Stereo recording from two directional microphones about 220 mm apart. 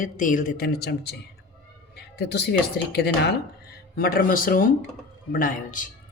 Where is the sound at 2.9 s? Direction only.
50° left (ahead or behind).